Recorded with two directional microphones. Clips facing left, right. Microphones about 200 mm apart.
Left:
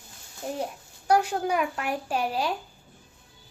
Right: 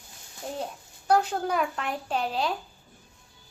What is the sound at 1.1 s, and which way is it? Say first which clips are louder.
A woman's voice: left 1 dB; 10° left (ahead or behind).